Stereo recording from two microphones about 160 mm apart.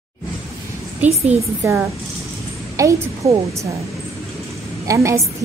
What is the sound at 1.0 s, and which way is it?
A woman's voice, 10° right (ahead or behind).